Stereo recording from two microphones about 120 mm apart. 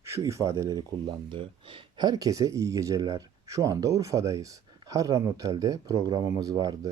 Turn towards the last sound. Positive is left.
turn(degrees=-30)  # may be behind; listen again after turning